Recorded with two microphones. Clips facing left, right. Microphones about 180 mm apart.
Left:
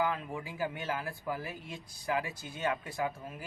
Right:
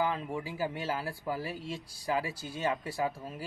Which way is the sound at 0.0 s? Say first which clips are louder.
Right 1 dB; 30° right (ahead or behind).